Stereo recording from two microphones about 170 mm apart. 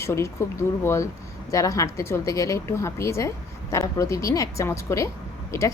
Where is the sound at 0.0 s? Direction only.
15° left (ahead or behind).